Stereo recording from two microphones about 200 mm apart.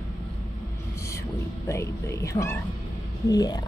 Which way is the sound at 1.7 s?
15° left (ahead or behind).